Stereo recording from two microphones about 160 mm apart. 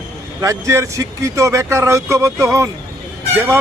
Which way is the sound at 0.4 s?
20° right (ahead or behind).